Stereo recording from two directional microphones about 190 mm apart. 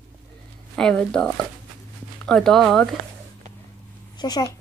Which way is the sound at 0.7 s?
5° left (ahead or behind).